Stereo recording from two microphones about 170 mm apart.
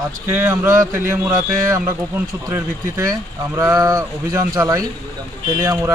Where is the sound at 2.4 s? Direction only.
20° right (ahead or behind).